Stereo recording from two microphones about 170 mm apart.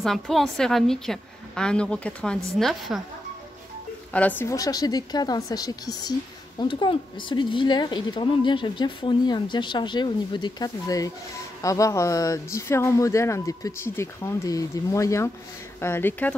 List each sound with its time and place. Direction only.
0.0 s a woman's voice: centre (ahead or behind)
4.1 s speech: 10° left (ahead or behind)